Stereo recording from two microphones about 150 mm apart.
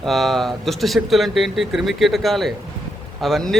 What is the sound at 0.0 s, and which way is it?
Speech, centre (ahead or behind).